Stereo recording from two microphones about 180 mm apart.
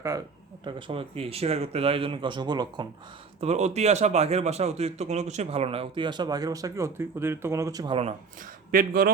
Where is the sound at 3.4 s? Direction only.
35° right (ahead or behind); by 7.9 s 20° right (ahead or behind).